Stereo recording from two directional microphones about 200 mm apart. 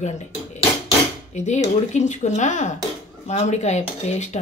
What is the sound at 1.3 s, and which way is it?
Speech, 35° left (ahead or behind).